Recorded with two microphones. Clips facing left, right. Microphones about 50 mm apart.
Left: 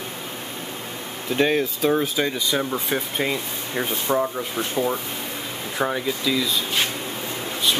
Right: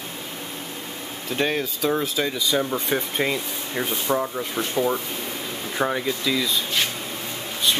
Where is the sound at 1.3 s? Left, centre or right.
Centre.